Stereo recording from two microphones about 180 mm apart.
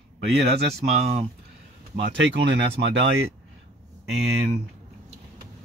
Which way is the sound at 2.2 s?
80° right.